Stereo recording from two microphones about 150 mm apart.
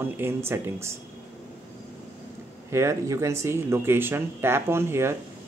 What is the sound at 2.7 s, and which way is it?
Speech, 20° right (ahead or behind).